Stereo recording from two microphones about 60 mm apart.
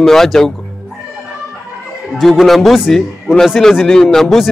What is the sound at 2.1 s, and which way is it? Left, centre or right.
A man's voice, centre.